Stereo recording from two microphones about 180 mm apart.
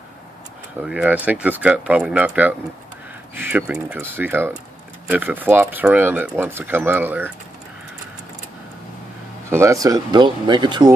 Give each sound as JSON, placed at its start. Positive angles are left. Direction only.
{"t": 0.8, "sound": "speech", "side_deg": -5}
{"t": 9.5, "sound": "speech", "side_deg": -15}